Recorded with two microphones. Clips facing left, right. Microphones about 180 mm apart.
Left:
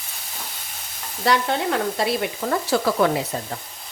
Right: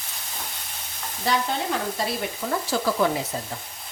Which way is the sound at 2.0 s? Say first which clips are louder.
Left 5 dB; 70° left (ahead or behind).